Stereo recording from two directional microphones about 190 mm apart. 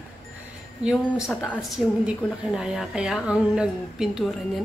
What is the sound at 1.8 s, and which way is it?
Speech, centre (ahead or behind).